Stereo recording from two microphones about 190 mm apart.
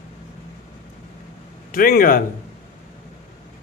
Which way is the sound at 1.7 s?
50° left (ahead or behind).